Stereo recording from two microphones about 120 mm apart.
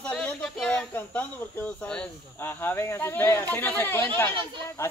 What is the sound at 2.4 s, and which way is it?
Speech, 15° left (ahead or behind).